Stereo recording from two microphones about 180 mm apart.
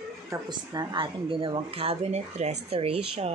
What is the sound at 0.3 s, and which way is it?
A woman's voice, 25° right (ahead or behind).